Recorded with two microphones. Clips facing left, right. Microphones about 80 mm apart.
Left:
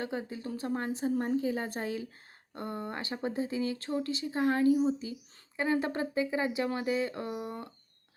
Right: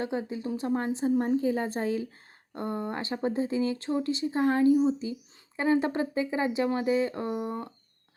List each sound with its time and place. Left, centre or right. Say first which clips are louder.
0.0 s a woman's voice: right 5 dB; right